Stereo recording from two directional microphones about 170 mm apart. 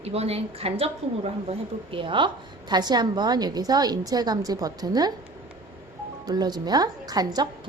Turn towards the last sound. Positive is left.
turn(degrees=-25)  # may be behind; listen again after turning